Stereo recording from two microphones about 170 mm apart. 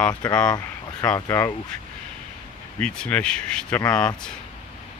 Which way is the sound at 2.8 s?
5° left (ahead or behind).